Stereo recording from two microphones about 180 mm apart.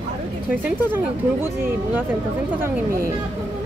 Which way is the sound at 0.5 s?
10° right (ahead or behind).